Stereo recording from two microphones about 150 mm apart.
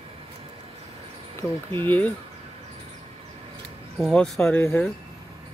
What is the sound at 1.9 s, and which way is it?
Speech, 10° left (ahead or behind).